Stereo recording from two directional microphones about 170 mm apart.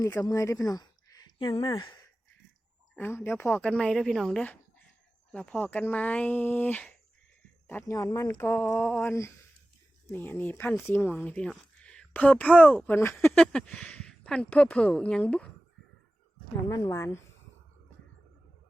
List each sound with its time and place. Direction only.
0.0 s speech: 20° left (ahead or behind)
2.9 s speech: 10° left (ahead or behind)
16.6 s speech: 15° left (ahead or behind)